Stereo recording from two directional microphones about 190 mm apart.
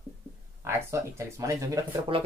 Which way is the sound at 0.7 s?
15° right (ahead or behind).